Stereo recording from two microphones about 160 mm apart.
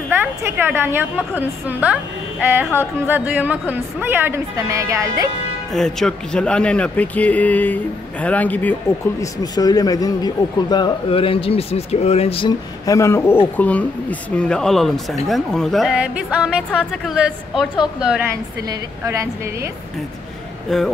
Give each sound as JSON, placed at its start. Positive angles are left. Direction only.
{"t": 0.1, "sound": "a woman's voice", "side_deg": -15}
{"t": 5.7, "sound": "speech", "side_deg": 0}
{"t": 9.2, "sound": "a man's voice", "side_deg": 25}
{"t": 12.8, "sound": "speech", "side_deg": 20}
{"t": 18.3, "sound": "a woman's voice", "side_deg": -20}
{"t": 20.7, "sound": "speech", "side_deg": 5}